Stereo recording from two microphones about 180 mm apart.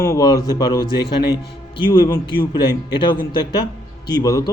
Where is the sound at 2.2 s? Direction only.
25° left (ahead or behind).